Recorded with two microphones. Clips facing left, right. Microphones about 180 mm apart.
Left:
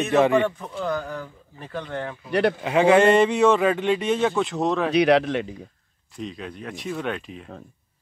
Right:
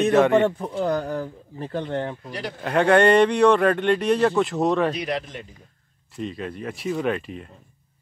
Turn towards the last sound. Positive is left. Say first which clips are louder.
# right 4 dB
turn(degrees=0)  # may be behind; listen again after turning